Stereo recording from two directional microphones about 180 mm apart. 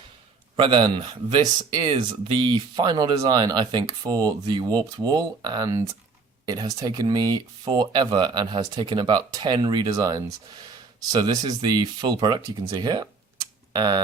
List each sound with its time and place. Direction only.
0.5 s speech: 30° right (ahead or behind)